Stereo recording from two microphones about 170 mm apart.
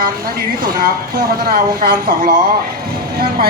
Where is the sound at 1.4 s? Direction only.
65° right (ahead or behind).